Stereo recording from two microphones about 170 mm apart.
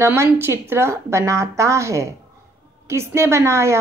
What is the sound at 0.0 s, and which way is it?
A woman's voice, 15° right (ahead or behind).